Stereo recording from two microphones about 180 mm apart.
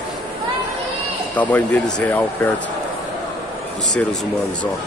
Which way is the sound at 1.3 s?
10° left (ahead or behind).